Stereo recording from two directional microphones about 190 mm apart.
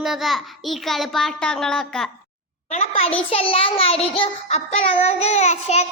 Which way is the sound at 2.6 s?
35° left (ahead or behind).